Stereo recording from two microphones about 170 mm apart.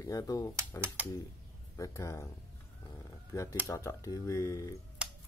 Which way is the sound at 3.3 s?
20° left (ahead or behind).